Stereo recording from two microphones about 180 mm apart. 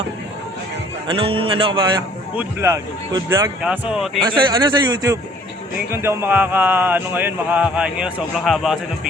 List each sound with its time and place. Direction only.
1.0 s speech: 30° right (ahead or behind)
2.3 s speech: 10° right (ahead or behind)
3.6 s speech: 5° right (ahead or behind)
4.2 s speech: 25° right (ahead or behind); by 8.8 s centre (ahead or behind)